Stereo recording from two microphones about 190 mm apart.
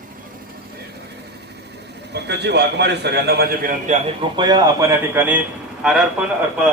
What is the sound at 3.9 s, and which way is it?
Speech, 40° right (ahead or behind).